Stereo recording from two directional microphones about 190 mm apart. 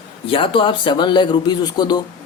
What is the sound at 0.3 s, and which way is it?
Speech, 30° left (ahead or behind).